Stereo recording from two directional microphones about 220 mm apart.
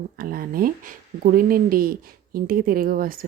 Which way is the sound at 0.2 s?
40° right (ahead or behind).